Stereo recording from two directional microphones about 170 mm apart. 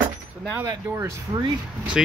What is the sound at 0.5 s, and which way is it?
Speech, 15° right (ahead or behind).